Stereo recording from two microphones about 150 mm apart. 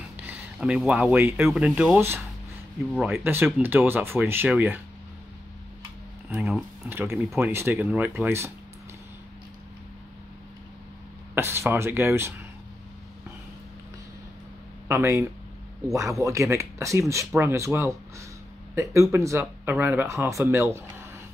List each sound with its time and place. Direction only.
0.2 s speech: 10° right (ahead or behind)
6.3 s speech: centre (ahead or behind)
6.9 s speech: 15° right (ahead or behind)
11.3 s speech: 15° right (ahead or behind)
14.9 s speech: 20° right (ahead or behind)